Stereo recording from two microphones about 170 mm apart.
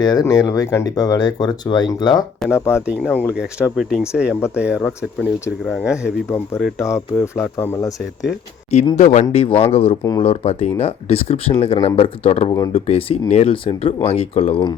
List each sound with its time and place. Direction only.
0.0 s speech: 20° left (ahead or behind)
2.5 s speech: 15° left (ahead or behind)
3.3 s speech: 5° right (ahead or behind)
5.8 s speech: 5° right (ahead or behind)
6.8 s speech: 15° left (ahead or behind)
9.0 s speech: 45° left (ahead or behind)
10.0 s speech: 20° left (ahead or behind)
10.2 s speech: 40° left (ahead or behind)